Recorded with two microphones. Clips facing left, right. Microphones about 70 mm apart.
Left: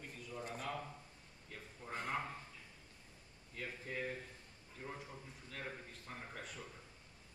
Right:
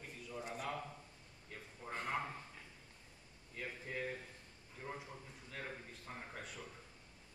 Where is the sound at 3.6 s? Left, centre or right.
Centre.